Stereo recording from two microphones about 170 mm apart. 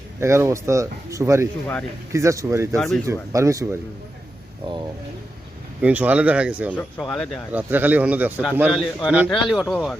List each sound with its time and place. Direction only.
0.2 s a man's voice: 15° right (ahead or behind)
2.7 s speech: centre (ahead or behind)
3.1 s a man's voice: 15° right (ahead or behind)
5.8 s a man's voice: 10° right (ahead or behind)
6.7 s speech: 5° left (ahead or behind)
7.5 s a man's voice: 10° right (ahead or behind)
9.5 s speech: centre (ahead or behind)